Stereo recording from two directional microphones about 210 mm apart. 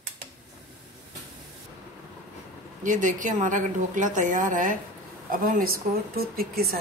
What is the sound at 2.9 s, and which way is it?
A woman's voice, 35° right (ahead or behind).